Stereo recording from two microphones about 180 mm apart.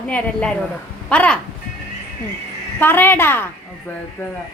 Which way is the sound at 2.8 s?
10° left (ahead or behind).